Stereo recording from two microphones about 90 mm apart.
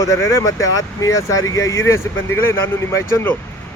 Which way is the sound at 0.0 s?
35° left (ahead or behind).